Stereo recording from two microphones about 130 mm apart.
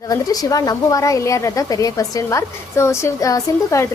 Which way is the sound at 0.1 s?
30° left (ahead or behind).